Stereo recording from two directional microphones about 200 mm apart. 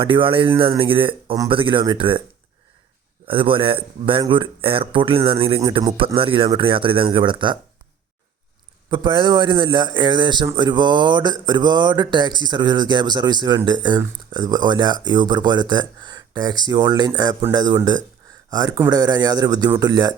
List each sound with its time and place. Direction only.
0.0 s a man's voice: 25° right (ahead or behind)
3.2 s a man's voice: 25° right (ahead or behind)
8.9 s a man's voice: 25° right (ahead or behind)